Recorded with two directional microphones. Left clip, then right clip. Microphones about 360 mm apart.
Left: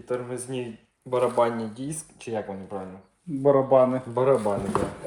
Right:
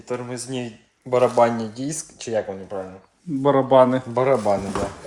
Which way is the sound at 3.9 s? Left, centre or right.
Right.